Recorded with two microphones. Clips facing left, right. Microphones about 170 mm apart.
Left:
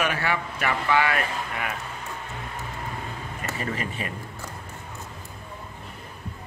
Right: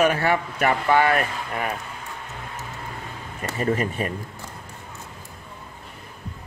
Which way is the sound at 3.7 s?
45° right (ahead or behind).